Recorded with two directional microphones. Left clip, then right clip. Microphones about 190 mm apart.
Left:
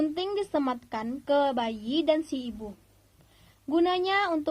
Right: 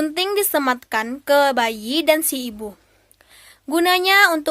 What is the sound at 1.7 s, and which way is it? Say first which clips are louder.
Speech: right 8 dB; 50° right (ahead or behind).